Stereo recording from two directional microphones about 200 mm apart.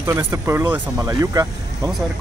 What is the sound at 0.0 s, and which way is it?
Speech, 15° right (ahead or behind).